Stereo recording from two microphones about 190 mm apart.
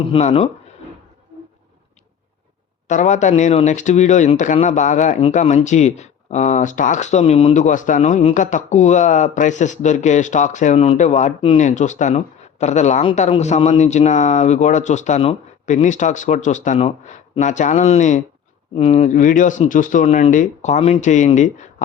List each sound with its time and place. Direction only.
0.0 s speech: 30° left (ahead or behind)
2.8 s speech: 40° left (ahead or behind)